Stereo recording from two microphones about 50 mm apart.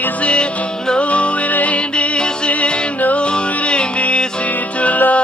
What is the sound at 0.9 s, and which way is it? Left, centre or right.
Music, left.